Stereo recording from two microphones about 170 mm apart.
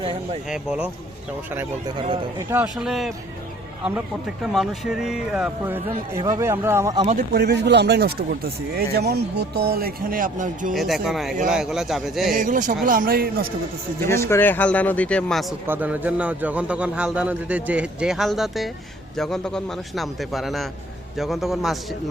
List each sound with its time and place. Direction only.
0.5 s a man's voice: 5° right (ahead or behind)
2.0 s speech: 30° right (ahead or behind)
2.5 s a man's voice: 5° right (ahead or behind)
4.5 s a man's voice: 5° right (ahead or behind)
7.3 s speech: 75° right (ahead or behind); by 10.8 s 50° right (ahead or behind)
10.8 s a man's voice: centre (ahead or behind)
12.3 s a man's voice: 50° right (ahead or behind)
14.1 s speech: 15° left (ahead or behind)
15.6 s a man's voice: 10° right (ahead or behind)